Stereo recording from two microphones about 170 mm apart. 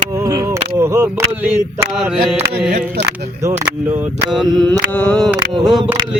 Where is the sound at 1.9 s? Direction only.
5° right (ahead or behind).